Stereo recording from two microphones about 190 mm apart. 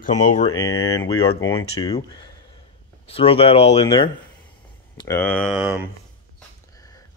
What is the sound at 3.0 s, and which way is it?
Speech, 30° left (ahead or behind).